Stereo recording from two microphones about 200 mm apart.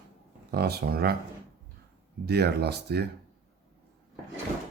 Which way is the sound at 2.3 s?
55° right (ahead or behind).